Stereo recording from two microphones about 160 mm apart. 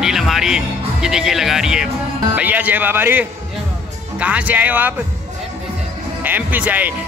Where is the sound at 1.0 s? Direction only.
5° right (ahead or behind).